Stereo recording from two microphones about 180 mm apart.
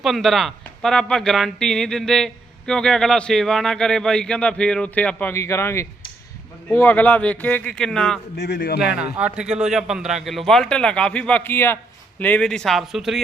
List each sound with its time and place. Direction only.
0.0 s a man's voice: centre (ahead or behind)
8.4 s speech: 60° left (ahead or behind)
8.8 s speech: 5° right (ahead or behind)